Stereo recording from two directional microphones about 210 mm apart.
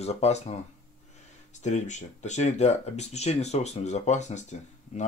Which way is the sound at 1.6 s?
35° left (ahead or behind).